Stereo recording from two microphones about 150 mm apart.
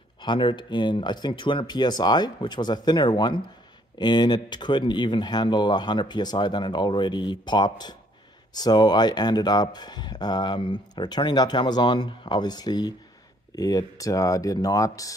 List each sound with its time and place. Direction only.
0.2 s speech: 35° left (ahead or behind)